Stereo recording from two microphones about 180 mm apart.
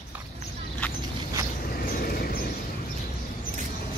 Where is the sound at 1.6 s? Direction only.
50° left (ahead or behind).